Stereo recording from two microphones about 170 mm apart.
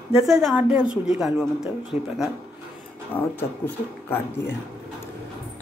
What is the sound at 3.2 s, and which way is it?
Speech, 10° left (ahead or behind).